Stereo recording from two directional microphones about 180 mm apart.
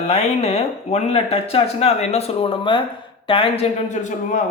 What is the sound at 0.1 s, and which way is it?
Speech, 35° left (ahead or behind).